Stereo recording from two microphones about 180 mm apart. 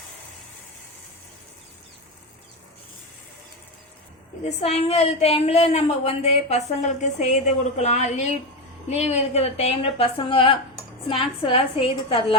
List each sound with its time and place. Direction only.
4.4 s a woman's voice: 35° left (ahead or behind)